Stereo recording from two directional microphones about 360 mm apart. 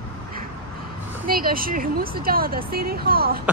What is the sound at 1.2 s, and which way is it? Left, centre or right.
Speech, right.